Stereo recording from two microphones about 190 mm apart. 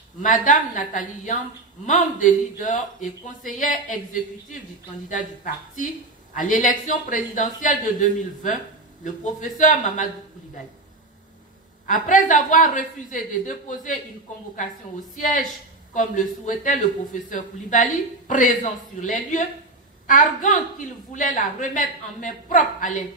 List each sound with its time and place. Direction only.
0.2 s speech: 45° left (ahead or behind)
11.8 s speech: 45° left (ahead or behind)
15.1 s speech: 45° left (ahead or behind)
16.4 s speech: 45° left (ahead or behind)